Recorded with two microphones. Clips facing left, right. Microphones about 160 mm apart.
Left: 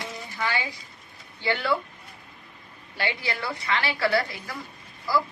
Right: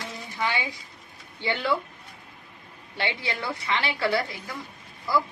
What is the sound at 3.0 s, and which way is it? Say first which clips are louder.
A woman's voice: even; 20° right (ahead or behind).